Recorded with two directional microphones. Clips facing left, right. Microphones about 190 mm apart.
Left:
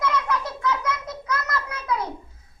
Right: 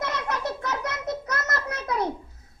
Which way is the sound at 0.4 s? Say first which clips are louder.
Left 3 dB; 40° right (ahead or behind).